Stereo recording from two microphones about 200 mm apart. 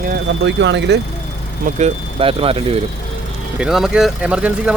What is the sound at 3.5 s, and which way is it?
Speech, 5° right (ahead or behind).